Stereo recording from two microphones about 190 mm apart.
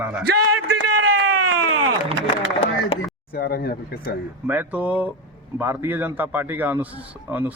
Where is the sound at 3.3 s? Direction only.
55° left (ahead or behind).